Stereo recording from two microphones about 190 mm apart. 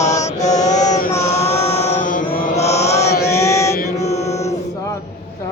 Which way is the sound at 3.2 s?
15° left (ahead or behind).